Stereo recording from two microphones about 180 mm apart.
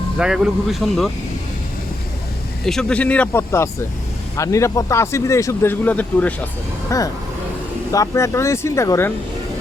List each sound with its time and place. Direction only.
0.2 s speech: 5° right (ahead or behind)
2.6 s speech: 5° left (ahead or behind)